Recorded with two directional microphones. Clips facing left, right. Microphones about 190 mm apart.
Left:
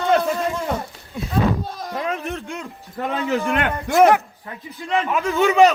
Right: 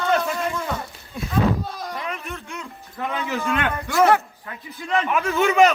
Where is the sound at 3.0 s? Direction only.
35° left (ahead or behind).